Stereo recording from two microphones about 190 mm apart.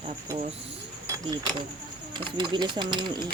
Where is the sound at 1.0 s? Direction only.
20° right (ahead or behind).